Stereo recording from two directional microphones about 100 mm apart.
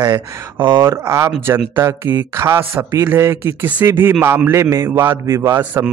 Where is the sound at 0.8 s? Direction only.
30° right (ahead or behind).